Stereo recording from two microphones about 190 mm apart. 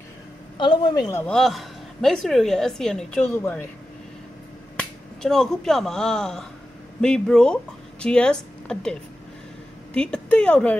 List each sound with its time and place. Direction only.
0.6 s a woman's voice: 25° left (ahead or behind)
1.2 s a woman's voice: centre (ahead or behind)
4.7 s a woman's voice: 5° left (ahead or behind)
9.9 s speech: 5° left (ahead or behind)